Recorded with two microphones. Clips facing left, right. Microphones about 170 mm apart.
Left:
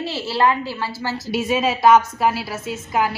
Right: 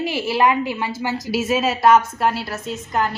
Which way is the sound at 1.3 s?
Centre (ahead or behind).